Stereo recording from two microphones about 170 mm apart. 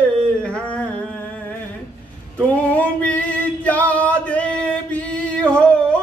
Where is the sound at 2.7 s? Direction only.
10° left (ahead or behind).